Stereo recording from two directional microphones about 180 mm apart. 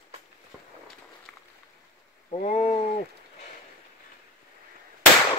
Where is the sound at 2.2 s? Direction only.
40° left (ahead or behind).